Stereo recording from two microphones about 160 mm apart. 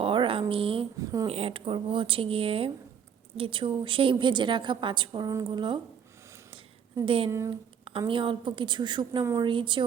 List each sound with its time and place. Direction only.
0.0 s a sound: 35° right (ahead or behind)
0.9 s a sound: 20° right (ahead or behind)
1.3 s a woman's voice: 35° right (ahead or behind)
7.0 s a woman's voice: 35° right (ahead or behind)
7.3 s speech: 20° right (ahead or behind)
7.9 s a woman's voice: 35° right (ahead or behind)